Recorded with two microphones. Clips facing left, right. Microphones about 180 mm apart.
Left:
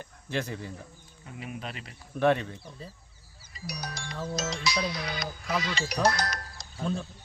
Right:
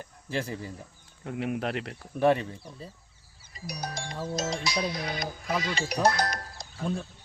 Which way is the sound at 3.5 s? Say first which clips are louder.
Right 2 dB; 50° right (ahead or behind).